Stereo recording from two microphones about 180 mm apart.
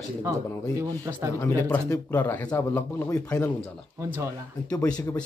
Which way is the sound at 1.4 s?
10° left (ahead or behind).